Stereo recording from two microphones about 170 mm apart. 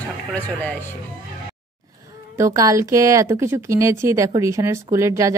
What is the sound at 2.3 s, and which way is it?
Speech, 20° right (ahead or behind).